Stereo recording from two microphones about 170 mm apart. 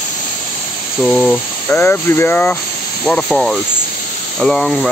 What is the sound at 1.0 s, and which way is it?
Speech, 5° left (ahead or behind).